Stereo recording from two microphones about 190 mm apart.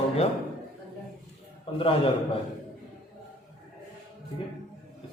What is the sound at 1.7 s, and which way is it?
Speech, 30° left (ahead or behind).